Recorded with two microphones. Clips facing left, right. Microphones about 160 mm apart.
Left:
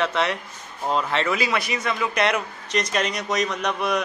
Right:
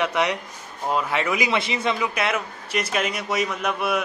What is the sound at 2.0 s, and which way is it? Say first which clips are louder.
Speech: left 2 dB; 5° right (ahead or behind).